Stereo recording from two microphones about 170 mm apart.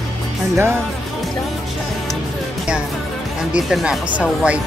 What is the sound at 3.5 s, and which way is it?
Speech, 5° right (ahead or behind).